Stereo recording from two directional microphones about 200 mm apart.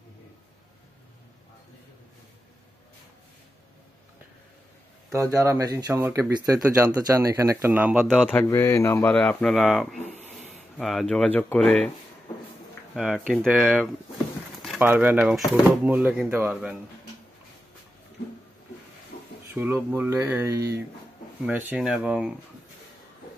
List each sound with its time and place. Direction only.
5.3 s speech: 15° right (ahead or behind)
8.3 s speech: 10° left (ahead or behind)
12.9 s speech: centre (ahead or behind)
19.5 s speech: 10° right (ahead or behind)